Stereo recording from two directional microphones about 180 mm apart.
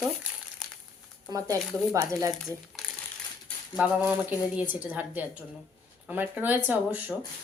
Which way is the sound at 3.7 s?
5° right (ahead or behind).